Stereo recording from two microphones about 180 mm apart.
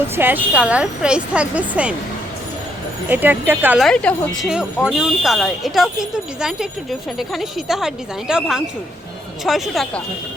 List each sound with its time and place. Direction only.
0.2 s speech: 10° right (ahead or behind)
3.1 s speech: 10° right (ahead or behind)
3.8 s speech: 5° left (ahead or behind)